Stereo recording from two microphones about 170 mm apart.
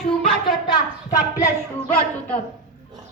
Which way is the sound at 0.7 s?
20° left (ahead or behind).